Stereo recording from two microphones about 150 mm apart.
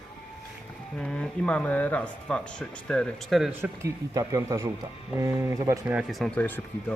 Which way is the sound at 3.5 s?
15° right (ahead or behind).